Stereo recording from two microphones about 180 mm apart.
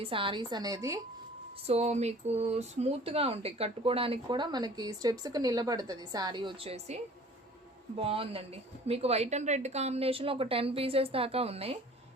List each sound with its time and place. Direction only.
0.0 s a woman's voice: 30° right (ahead or behind)
1.6 s speech: 35° right (ahead or behind)